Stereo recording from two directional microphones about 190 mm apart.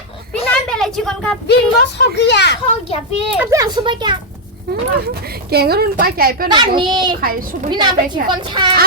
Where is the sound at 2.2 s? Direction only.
65° left (ahead or behind).